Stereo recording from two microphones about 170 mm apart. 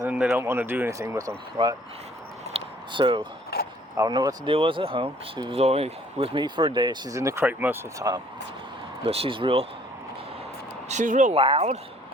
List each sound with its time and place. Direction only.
0.1 s speech: 10° right (ahead or behind)
2.5 s a sound: 30° right (ahead or behind)
3.5 s speech: 65° left (ahead or behind)
3.9 s speech: 20° right (ahead or behind)
9.0 s speech: 35° right (ahead or behind)
10.8 s speech: 45° right (ahead or behind)
11.3 s speech: 35° right (ahead or behind)